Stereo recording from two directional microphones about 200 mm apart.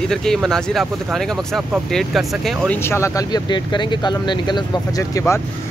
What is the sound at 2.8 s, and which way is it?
Speech, 15° left (ahead or behind).